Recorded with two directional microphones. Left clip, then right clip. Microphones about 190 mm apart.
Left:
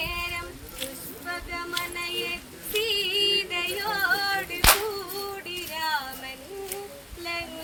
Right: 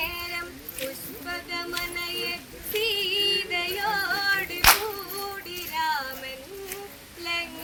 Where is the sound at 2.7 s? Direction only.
Centre (ahead or behind).